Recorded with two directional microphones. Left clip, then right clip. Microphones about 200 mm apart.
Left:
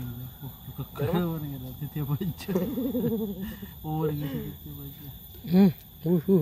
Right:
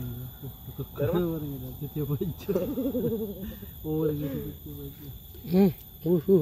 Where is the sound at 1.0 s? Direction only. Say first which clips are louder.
Right 2 dB; 35° left (ahead or behind).